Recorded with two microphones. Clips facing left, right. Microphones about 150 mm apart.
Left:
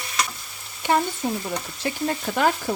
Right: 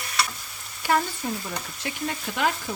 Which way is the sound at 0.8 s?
25° left (ahead or behind).